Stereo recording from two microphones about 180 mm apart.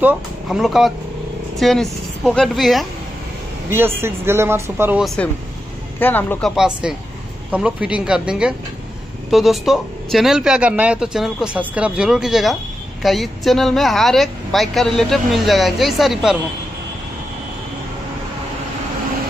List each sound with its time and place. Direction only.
0.0 s speech: 5° right (ahead or behind)
3.7 s speech: 15° right (ahead or behind)
5.0 s speech: 5° left (ahead or behind)
6.5 s speech: 5° right (ahead or behind)